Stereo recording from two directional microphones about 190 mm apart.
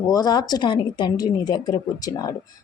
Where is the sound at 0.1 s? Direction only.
20° left (ahead or behind).